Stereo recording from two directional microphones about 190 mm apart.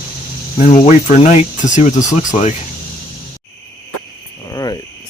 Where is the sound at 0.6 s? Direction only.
40° left (ahead or behind).